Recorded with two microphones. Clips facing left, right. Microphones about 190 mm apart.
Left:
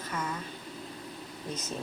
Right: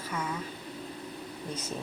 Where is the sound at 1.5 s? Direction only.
10° right (ahead or behind).